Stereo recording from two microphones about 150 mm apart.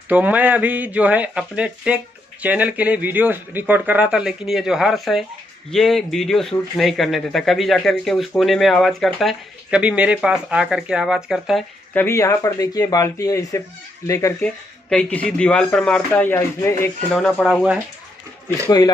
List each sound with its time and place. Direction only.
0.1 s a man's voice: 10° right (ahead or behind)
11.9 s speech: 15° left (ahead or behind)
14.9 s speech: 10° left (ahead or behind)